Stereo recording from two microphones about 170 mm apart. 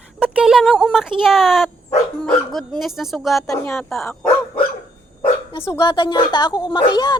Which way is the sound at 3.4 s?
10° left (ahead or behind).